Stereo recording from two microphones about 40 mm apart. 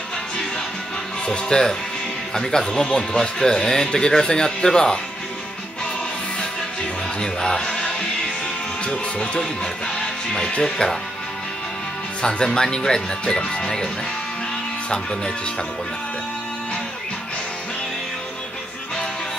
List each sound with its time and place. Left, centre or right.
1.2 s speech: left
7.2 s music: centre
8.8 s speech: left
12.2 s speech: left
14.9 s speech: left